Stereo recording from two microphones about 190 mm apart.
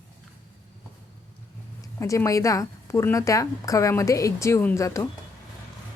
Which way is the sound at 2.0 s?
15° left (ahead or behind).